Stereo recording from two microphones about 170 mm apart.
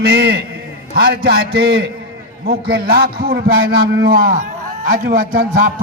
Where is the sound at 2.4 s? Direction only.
65° right (ahead or behind).